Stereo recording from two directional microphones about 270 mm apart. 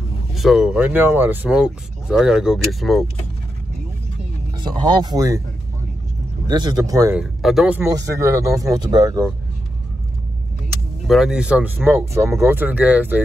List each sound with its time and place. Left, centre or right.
0.3 s speech: centre
4.6 s speech: centre
6.4 s speech: centre
11.1 s speech: centre